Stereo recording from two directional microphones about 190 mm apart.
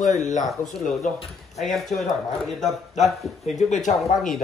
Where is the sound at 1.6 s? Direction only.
Centre (ahead or behind).